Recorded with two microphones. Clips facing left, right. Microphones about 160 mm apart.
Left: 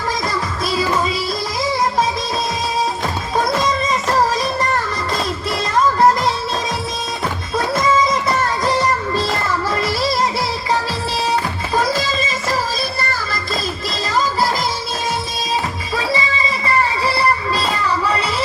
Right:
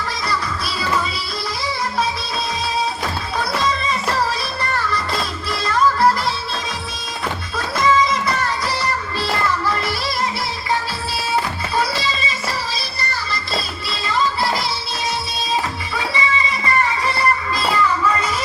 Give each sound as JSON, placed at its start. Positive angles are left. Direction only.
{"t": 3.3, "sound": "music", "side_deg": 45}
{"t": 8.6, "sound": "music", "side_deg": 45}
{"t": 11.7, "sound": "music", "side_deg": 45}
{"t": 17.1, "sound": "music", "side_deg": 35}